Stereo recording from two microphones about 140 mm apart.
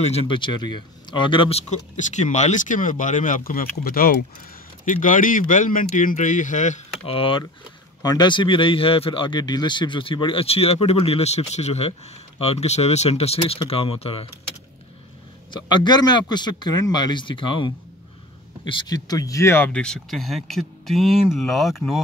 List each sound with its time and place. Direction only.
0.0 s speech: 45° left (ahead or behind)
1.7 s speech: 55° left (ahead or behind); by 4.1 s 90° left
4.8 s speech: 70° left (ahead or behind)
7.1 s speech: 40° left (ahead or behind)
8.0 s speech: 30° left (ahead or behind)
15.5 s speech: 30° left (ahead or behind); by 22.0 s centre (ahead or behind)